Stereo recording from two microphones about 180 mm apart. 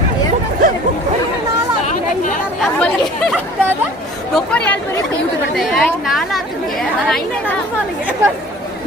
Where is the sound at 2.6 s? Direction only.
5° left (ahead or behind).